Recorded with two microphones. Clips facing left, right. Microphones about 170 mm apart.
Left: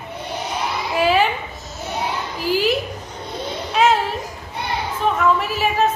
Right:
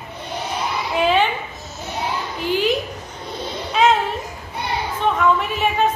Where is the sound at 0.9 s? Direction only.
5° left (ahead or behind).